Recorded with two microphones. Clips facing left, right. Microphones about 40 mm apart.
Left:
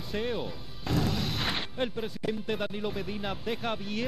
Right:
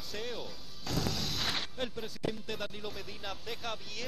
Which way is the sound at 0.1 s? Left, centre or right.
Left.